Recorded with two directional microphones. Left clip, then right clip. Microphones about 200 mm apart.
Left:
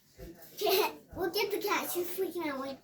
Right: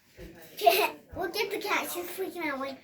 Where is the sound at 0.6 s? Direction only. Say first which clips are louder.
Right 6 dB; 50° left (ahead or behind).